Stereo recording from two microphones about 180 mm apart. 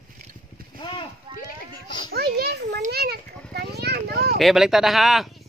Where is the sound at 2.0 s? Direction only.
60° right (ahead or behind).